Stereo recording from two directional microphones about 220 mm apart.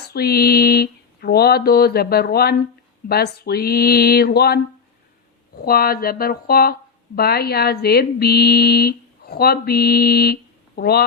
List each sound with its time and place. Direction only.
0.1 s speech: 45° left (ahead or behind)
5.6 s speech: 45° left (ahead or behind)